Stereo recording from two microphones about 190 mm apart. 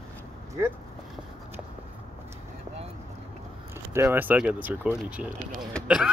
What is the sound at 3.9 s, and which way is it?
Speech, 10° right (ahead or behind).